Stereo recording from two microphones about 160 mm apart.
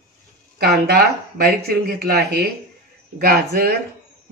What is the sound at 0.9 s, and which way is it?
Speech, 70° right (ahead or behind).